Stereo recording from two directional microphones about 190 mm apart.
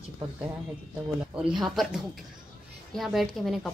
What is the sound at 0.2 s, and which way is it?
Speech, 15° right (ahead or behind).